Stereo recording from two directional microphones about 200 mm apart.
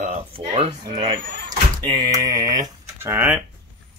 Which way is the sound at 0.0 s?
30° right (ahead or behind).